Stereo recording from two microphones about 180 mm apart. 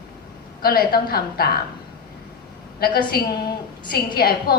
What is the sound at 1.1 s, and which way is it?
Speech, 60° left (ahead or behind).